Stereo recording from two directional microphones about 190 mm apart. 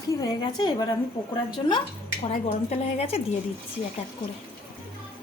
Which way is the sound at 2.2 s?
35° left (ahead or behind).